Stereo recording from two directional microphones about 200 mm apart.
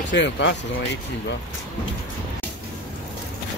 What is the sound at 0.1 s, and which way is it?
Speech, 60° left (ahead or behind).